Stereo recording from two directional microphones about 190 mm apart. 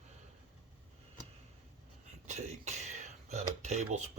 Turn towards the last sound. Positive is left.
turn(degrees=-35)  # may be behind; listen again after turning